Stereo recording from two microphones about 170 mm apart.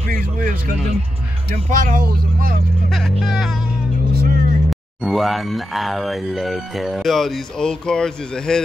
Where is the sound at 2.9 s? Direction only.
Centre (ahead or behind).